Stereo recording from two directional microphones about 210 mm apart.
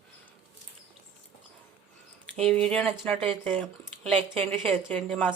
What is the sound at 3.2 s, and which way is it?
Speech, 25° right (ahead or behind).